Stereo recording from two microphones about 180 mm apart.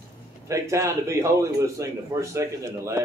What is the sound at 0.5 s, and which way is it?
A man's voice, 15° right (ahead or behind).